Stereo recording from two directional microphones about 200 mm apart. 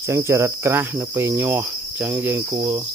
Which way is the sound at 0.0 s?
15° right (ahead or behind).